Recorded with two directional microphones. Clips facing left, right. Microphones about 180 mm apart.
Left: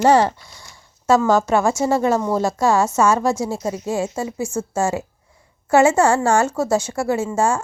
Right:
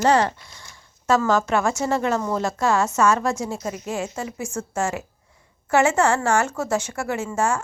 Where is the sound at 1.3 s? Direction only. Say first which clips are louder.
Left 4 dB; 30° left (ahead or behind).